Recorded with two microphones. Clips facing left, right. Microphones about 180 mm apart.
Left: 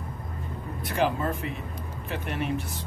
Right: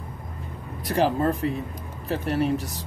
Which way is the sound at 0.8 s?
35° right (ahead or behind).